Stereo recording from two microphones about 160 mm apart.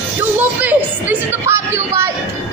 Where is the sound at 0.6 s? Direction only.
10° right (ahead or behind).